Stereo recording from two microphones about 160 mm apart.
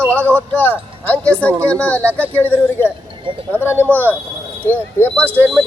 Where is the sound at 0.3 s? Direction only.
10° left (ahead or behind).